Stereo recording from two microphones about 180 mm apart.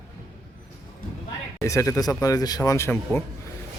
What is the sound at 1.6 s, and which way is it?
Speech, 15° left (ahead or behind).